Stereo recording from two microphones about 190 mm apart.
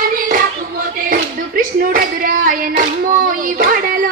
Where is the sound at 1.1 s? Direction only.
50° right (ahead or behind).